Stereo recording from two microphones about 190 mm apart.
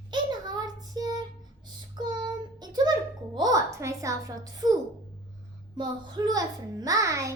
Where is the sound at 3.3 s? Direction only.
20° right (ahead or behind).